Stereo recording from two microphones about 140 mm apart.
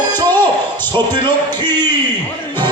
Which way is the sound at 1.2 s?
30° right (ahead or behind).